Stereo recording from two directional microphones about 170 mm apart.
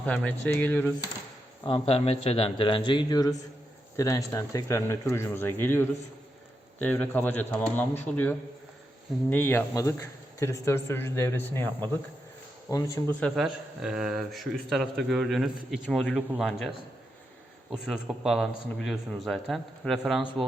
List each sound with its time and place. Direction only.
0.0 s speech: 10° left (ahead or behind)
1.6 s a man's voice: 35° left (ahead or behind); by 11.7 s 10° left (ahead or behind)
13.1 s a man's voice: 5° left (ahead or behind)